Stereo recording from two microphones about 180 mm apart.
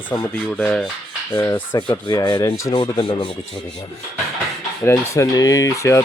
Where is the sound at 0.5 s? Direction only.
5° left (ahead or behind); by 3.3 s 30° left (ahead or behind).